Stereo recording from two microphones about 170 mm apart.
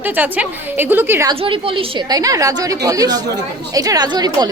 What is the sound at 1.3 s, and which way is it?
A woman's voice, 30° right (ahead or behind).